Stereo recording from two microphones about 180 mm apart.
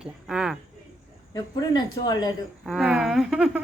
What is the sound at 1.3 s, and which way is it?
Speech, 20° left (ahead or behind).